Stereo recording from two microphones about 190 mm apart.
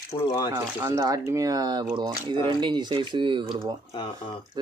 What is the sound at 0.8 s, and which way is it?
Speech, 15° right (ahead or behind).